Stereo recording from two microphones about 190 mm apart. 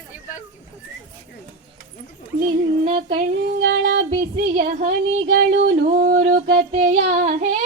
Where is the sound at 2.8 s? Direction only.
30° right (ahead or behind).